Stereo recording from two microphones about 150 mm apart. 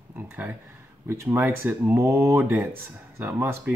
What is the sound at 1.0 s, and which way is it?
Speech, 15° right (ahead or behind).